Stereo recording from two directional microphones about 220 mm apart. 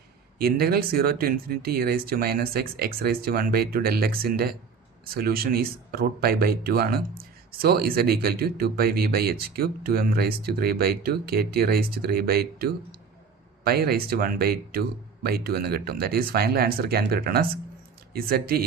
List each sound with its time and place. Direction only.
0.3 s speech: 45° right (ahead or behind)